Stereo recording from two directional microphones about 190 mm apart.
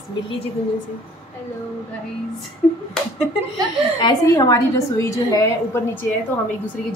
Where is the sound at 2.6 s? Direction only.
Centre (ahead or behind).